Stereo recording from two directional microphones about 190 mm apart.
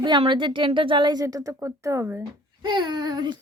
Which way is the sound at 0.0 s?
25° right (ahead or behind).